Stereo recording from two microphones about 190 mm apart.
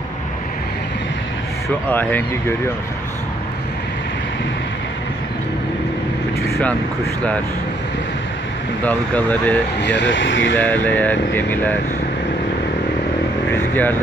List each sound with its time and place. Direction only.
1.9 s speech: 10° left (ahead or behind)
8.8 s speech: 10° left (ahead or behind)
9.8 s speech: 65° left (ahead or behind)
10.6 s speech: 10° left (ahead or behind)
13.5 s speech: 10° left (ahead or behind)